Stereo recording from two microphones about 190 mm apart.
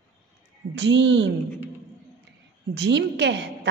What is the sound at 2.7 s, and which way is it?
Speech, 65° right (ahead or behind).